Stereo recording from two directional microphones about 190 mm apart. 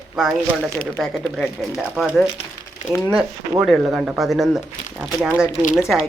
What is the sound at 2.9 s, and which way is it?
Dishes, 10° left (ahead or behind).